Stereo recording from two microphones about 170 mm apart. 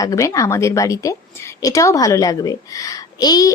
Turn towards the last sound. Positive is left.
turn(degrees=20)  # may be behind; listen again after turning